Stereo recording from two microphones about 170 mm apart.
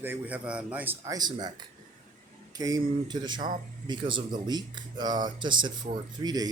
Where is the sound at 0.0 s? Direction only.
10° right (ahead or behind).